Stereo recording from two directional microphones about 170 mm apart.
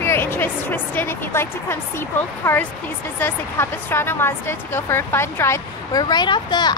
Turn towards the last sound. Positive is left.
turn(degrees=25)  # may be behind; listen again after turning